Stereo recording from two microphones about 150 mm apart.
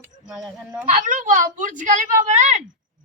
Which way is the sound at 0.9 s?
60° right (ahead or behind).